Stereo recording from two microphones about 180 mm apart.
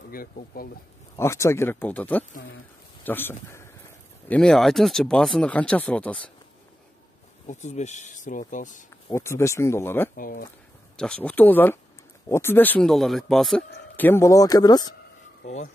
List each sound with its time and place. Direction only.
0.1 s speech: 55° left (ahead or behind)
1.1 s speech: 15° left (ahead or behind)
3.4 s a sound: 15° left (ahead or behind)
4.3 s speech: 5° left (ahead or behind)
7.4 s speech: 40° left (ahead or behind)
9.1 s speech: 15° left (ahead or behind)
10.1 s speech: 50° left (ahead or behind)
11.0 s speech: 5° left (ahead or behind)
13.9 s speech: 10° left (ahead or behind)
15.4 s speech: 45° left (ahead or behind)